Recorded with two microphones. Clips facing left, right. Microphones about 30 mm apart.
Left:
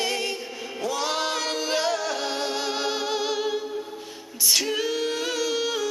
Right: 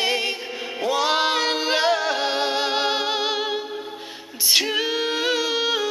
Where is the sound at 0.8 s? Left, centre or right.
Right.